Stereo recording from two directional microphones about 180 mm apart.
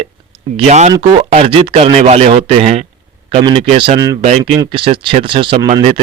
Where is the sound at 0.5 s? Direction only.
40° right (ahead or behind).